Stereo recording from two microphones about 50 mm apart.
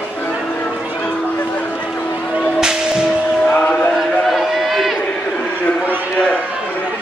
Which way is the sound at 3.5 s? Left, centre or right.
Left.